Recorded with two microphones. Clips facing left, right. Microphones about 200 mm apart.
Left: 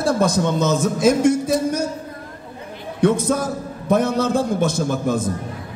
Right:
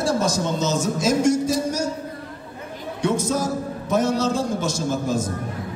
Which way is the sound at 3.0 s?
55° left (ahead or behind).